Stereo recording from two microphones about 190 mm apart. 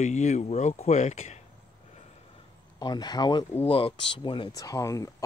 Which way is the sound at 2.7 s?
20° left (ahead or behind).